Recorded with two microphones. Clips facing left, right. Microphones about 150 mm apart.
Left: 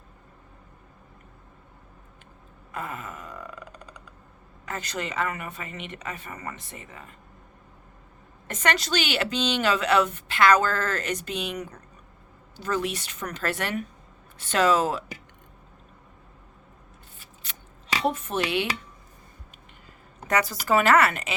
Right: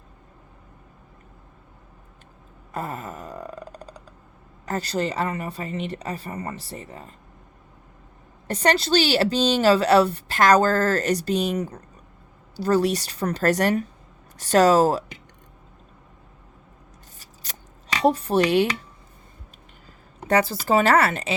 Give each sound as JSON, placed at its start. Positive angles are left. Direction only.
{"t": 2.7, "sound": "a sound", "side_deg": -35}
{"t": 4.6, "sound": "a woman's voice", "side_deg": -35}
{"t": 8.4, "sound": "a woman's voice", "side_deg": -35}
{"t": 17.2, "sound": "scissors", "side_deg": -40}
{"t": 20.2, "sound": "a woman's voice", "side_deg": -30}